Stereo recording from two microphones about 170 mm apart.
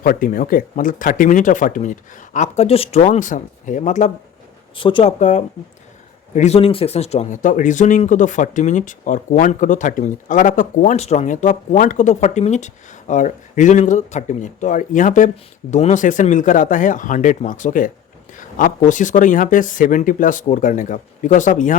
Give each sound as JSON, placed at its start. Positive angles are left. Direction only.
{"t": 0.0, "sound": "speech", "side_deg": 55}
{"t": 4.7, "sound": "speech", "side_deg": 30}
{"t": 5.2, "sound": "speech", "side_deg": 45}